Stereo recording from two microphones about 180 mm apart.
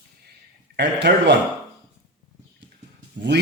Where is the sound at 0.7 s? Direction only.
70° right (ahead or behind).